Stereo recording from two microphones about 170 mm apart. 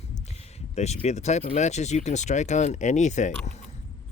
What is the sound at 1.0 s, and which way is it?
Speech, 40° left (ahead or behind).